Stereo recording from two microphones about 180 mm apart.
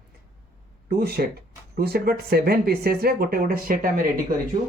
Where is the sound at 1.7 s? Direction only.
60° right (ahead or behind).